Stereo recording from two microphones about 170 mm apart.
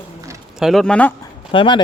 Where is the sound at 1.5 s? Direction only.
30° left (ahead or behind).